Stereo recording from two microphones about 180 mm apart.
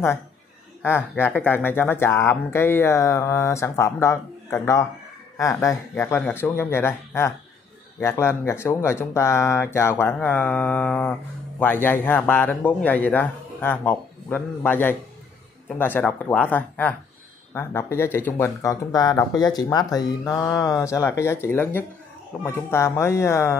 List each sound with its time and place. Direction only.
0.8 s speech: 10° left (ahead or behind)